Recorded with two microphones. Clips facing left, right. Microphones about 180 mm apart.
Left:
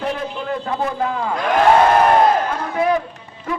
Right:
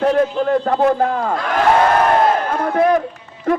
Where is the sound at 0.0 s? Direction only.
50° right (ahead or behind).